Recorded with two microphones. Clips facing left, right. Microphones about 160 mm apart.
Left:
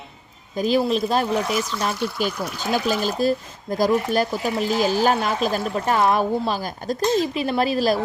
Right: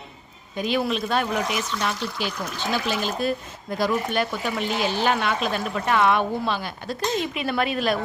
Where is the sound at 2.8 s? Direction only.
40° left (ahead or behind).